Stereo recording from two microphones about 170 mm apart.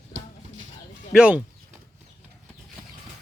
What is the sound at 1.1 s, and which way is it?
Speech, 5° right (ahead or behind).